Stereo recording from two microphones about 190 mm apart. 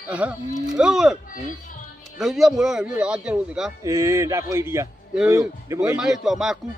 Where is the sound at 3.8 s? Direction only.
15° right (ahead or behind).